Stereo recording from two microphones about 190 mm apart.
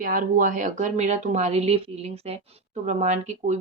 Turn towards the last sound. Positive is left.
turn(degrees=-35)  # may be behind; listen again after turning